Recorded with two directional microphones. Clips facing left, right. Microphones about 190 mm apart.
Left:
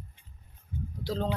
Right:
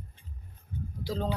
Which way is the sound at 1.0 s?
10° right (ahead or behind).